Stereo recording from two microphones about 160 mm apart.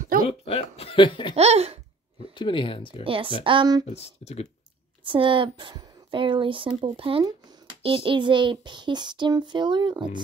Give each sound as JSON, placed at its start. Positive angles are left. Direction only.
{"t": 0.0, "sound": "a sound", "side_deg": -60}
{"t": 0.3, "sound": "speech", "side_deg": 40}
{"t": 1.3, "sound": "speech", "side_deg": -40}
{"t": 2.3, "sound": "speech", "side_deg": 30}
{"t": 3.0, "sound": "speech", "side_deg": -35}
{"t": 3.8, "sound": "speech", "side_deg": 40}
{"t": 5.0, "sound": "speech", "side_deg": -30}
{"t": 7.8, "sound": "child singing", "side_deg": -35}